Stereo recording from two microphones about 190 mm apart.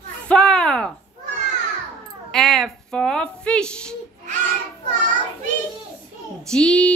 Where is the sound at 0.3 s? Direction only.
5° left (ahead or behind).